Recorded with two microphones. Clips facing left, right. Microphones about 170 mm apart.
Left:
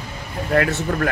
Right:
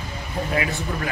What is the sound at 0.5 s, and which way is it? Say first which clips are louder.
Speech: left 8 dB; 60° left (ahead or behind).